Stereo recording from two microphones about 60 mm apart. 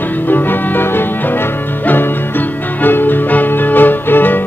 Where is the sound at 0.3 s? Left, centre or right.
Left.